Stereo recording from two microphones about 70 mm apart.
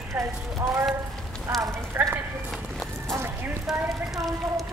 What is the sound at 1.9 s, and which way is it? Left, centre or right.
Speech, right.